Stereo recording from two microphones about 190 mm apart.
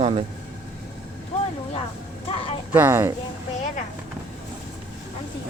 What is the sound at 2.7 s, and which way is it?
Speech, 10° right (ahead or behind).